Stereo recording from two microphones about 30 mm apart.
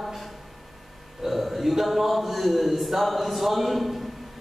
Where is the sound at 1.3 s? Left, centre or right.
Centre.